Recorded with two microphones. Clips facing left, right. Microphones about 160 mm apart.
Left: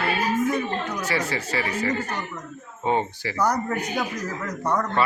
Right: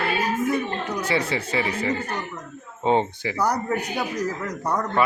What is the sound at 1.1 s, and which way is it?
Speech, 25° right (ahead or behind).